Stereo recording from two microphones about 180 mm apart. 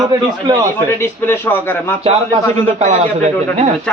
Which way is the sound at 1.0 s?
15° left (ahead or behind).